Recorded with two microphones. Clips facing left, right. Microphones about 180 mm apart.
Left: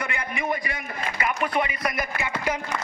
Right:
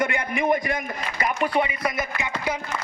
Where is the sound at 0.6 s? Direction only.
40° right (ahead or behind); by 2.3 s 20° right (ahead or behind).